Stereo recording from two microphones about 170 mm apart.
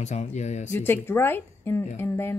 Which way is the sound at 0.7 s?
15° left (ahead or behind).